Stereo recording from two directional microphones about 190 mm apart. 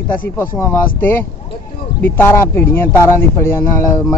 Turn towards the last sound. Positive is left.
turn(degrees=15)  # may be behind; listen again after turning